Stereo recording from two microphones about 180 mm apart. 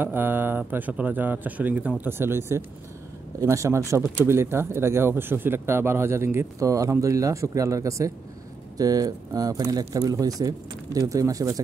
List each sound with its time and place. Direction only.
0.0 s speech: 10° right (ahead or behind)